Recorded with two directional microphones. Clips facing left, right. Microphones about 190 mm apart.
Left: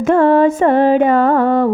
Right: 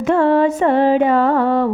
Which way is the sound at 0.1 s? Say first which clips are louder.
Left 3 dB; 50° left (ahead or behind).